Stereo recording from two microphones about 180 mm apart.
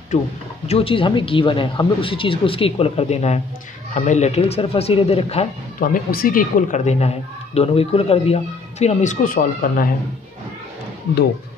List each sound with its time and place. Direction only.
0.7 s speech: 30° left (ahead or behind)
5.8 s speech: 50° left (ahead or behind)